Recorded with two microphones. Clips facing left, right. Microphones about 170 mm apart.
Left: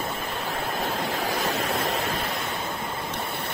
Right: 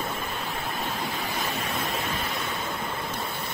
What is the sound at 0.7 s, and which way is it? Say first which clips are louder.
Waves: left 4 dB; 90° left.